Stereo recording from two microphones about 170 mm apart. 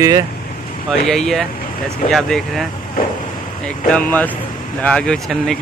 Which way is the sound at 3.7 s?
5° left (ahead or behind).